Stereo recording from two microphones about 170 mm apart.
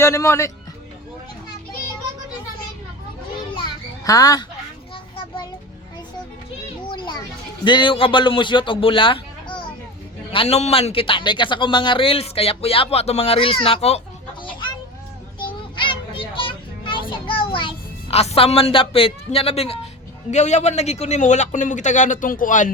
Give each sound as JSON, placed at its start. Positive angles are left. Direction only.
{"t": 0.0, "sound": "a man's voice", "side_deg": 15}
{"t": 3.5, "sound": "children playing", "side_deg": 25}
{"t": 6.8, "sound": "children playing", "side_deg": 30}
{"t": 7.6, "sound": "a man's voice", "side_deg": 25}
{"t": 15.4, "sound": "children playing", "side_deg": 30}
{"t": 20.3, "sound": "a man's voice", "side_deg": 45}